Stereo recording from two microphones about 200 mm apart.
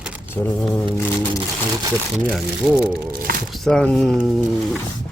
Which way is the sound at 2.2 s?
Centre (ahead or behind).